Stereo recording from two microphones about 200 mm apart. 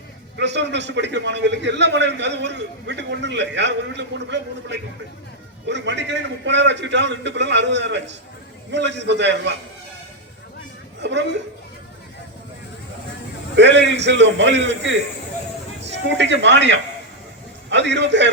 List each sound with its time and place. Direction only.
0.3 s a man's voice: 60° right (ahead or behind)
11.0 s a man's voice: 60° right (ahead or behind)
13.6 s a man's voice: 60° right (ahead or behind)